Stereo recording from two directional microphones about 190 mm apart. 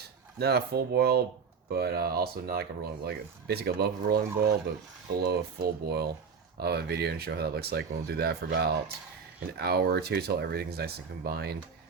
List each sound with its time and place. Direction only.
0.3 s speech: 55° right (ahead or behind)